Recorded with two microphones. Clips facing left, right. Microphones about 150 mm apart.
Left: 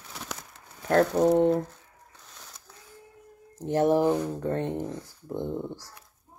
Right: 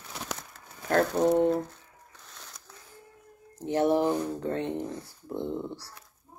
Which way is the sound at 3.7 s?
45° left (ahead or behind).